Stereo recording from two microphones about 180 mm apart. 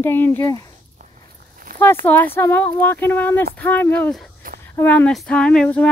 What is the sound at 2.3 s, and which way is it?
Speech, 10° left (ahead or behind).